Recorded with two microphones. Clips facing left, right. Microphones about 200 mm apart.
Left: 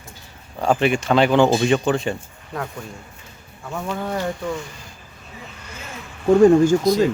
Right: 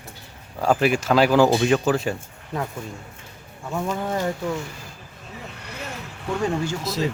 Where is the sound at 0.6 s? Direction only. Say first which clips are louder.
Left 1 dB; 5° right (ahead or behind).